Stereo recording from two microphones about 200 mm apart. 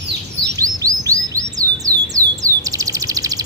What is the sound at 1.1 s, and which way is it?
Bird, 15° right (ahead or behind).